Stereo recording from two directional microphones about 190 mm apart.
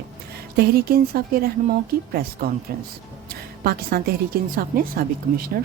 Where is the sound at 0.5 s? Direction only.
55° right (ahead or behind).